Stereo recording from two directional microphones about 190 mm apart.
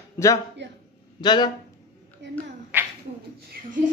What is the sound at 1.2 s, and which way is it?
Speech, 20° left (ahead or behind).